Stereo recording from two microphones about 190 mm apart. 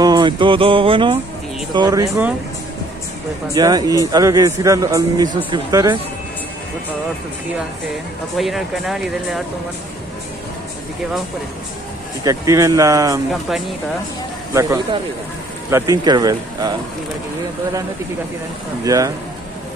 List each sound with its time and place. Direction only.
0.0 s music: 25° right (ahead or behind)
1.7 s a man's voice: 20° right (ahead or behind)
3.5 s a man's voice: 20° right (ahead or behind)
8.4 s speech: centre (ahead or behind)
12.3 s speech: 15° right (ahead or behind)
14.5 s a man's voice: 15° right (ahead or behind)
18.9 s speech: 15° right (ahead or behind)